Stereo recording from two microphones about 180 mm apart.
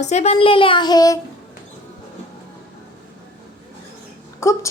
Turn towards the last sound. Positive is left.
turn(degrees=15)  # may be behind; listen again after turning